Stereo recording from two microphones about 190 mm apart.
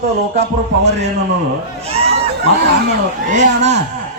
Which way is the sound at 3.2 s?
40° right (ahead or behind).